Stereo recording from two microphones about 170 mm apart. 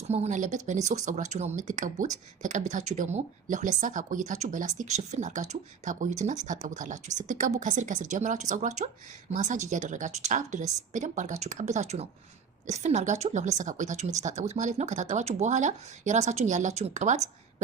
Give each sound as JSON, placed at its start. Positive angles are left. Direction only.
{"t": 0.1, "sound": "speech", "side_deg": -45}